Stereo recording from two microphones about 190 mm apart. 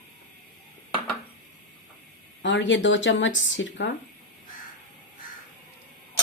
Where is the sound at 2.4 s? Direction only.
75° left (ahead or behind).